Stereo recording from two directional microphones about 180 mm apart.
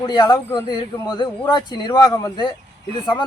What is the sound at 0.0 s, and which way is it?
Speech, 25° left (ahead or behind).